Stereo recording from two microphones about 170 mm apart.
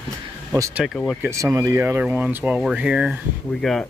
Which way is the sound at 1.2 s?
20° right (ahead or behind).